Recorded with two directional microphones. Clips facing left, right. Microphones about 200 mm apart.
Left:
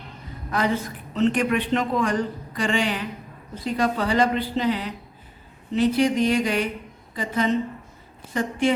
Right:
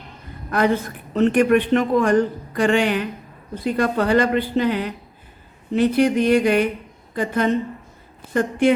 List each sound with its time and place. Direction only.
0.5 s a woman's voice: 55° right (ahead or behind)